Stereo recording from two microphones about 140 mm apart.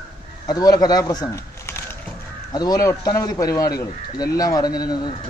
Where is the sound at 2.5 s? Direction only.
25° left (ahead or behind).